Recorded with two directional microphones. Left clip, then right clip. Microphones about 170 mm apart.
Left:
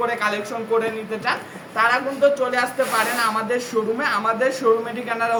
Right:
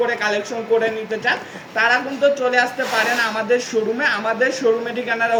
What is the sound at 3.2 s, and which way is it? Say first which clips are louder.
A woman's voice: right 3 dB; 20° left (ahead or behind).